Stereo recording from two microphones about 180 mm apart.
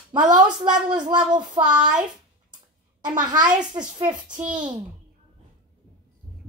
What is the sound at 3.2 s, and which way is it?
A child's voice, 25° right (ahead or behind).